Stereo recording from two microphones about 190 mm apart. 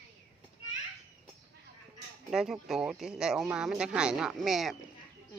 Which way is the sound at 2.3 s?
Centre (ahead or behind).